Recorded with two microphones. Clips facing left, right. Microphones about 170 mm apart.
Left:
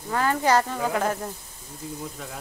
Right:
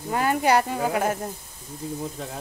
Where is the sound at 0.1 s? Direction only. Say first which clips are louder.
Right 1 dB; 15° right (ahead or behind).